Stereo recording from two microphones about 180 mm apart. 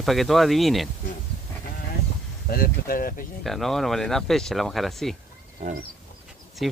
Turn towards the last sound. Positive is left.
turn(degrees=0)  # may be behind; listen again after turning